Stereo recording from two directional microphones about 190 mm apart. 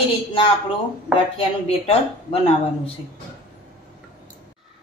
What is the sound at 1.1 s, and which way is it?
Speech, centre (ahead or behind).